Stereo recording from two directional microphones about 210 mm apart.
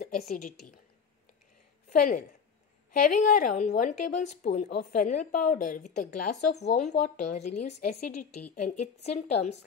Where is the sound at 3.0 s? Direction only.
40° left (ahead or behind).